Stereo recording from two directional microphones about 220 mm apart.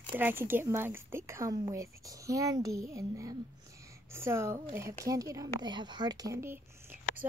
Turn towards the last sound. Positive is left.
turn(degrees=-10)  # may be behind; listen again after turning